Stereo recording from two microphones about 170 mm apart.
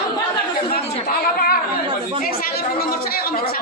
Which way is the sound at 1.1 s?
60° left (ahead or behind).